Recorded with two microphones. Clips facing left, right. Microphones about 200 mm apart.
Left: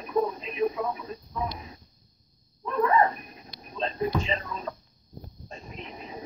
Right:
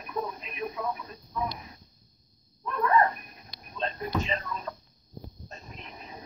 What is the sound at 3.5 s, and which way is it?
Speech, 30° left (ahead or behind).